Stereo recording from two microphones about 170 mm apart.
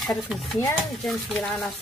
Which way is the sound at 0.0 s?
Centre (ahead or behind).